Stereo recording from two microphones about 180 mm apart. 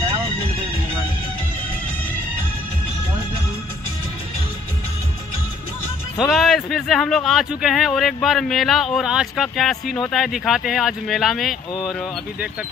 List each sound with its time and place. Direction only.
0.0 s vehicle: 35° right (ahead or behind)
6.1 s a man's voice: centre (ahead or behind)